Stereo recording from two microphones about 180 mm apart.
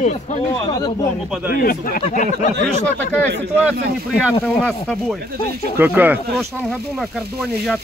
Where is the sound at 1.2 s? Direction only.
5° right (ahead or behind).